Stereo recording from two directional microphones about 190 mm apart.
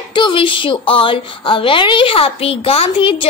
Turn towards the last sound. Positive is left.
turn(degrees=30)  # may be behind; listen again after turning